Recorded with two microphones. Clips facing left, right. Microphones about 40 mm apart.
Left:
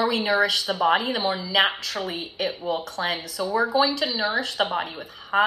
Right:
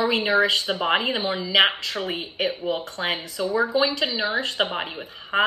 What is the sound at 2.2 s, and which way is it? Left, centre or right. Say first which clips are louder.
Speech: right 2 dB; right.